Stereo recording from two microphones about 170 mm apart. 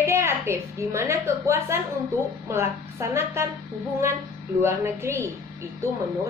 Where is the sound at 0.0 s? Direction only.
15° right (ahead or behind).